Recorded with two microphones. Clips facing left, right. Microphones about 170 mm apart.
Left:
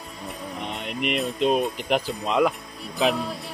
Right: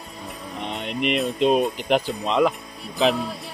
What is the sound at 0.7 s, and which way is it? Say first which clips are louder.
Speech: right 4 dB; centre (ahead or behind).